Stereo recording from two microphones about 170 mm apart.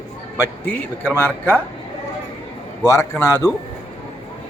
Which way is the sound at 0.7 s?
10° left (ahead or behind).